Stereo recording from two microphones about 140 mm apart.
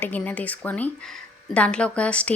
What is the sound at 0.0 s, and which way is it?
A woman's voice, 10° left (ahead or behind).